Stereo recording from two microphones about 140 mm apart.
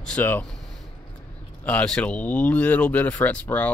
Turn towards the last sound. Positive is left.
turn(degrees=10)  # may be behind; listen again after turning